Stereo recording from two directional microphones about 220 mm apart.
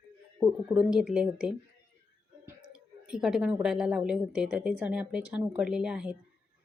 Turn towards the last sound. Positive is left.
turn(degrees=-5)  # may be behind; listen again after turning